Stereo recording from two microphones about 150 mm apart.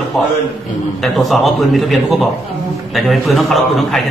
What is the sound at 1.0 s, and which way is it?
A man's voice, centre (ahead or behind).